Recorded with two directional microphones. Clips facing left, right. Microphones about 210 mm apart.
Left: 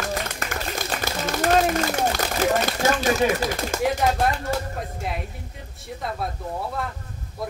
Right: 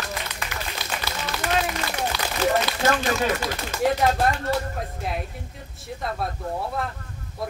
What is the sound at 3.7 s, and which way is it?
Speech, 50° left (ahead or behind).